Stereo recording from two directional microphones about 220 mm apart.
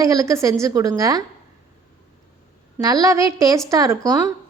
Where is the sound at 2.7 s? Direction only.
15° right (ahead or behind).